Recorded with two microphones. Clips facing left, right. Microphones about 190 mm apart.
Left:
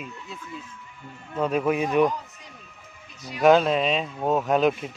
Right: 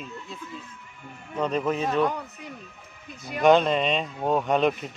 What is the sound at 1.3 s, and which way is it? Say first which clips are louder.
Speech: left 2 dB; 5° left (ahead or behind).